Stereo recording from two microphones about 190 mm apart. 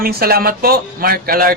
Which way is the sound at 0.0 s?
55° right (ahead or behind).